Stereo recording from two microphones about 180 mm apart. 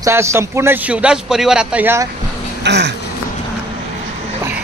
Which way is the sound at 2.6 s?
70° right (ahead or behind).